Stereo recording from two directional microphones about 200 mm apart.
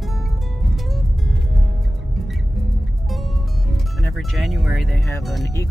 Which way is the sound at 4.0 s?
Centre (ahead or behind).